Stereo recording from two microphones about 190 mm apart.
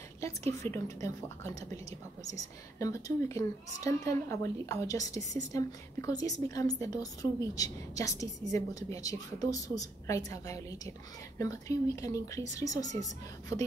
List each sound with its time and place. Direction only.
0.6 s a woman's voice: 15° left (ahead or behind)